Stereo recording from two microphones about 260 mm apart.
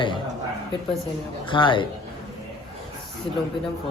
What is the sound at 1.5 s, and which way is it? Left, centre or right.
Speech, centre.